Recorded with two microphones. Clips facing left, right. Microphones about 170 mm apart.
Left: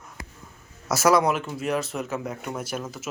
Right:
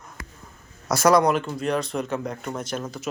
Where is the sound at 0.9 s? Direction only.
5° left (ahead or behind).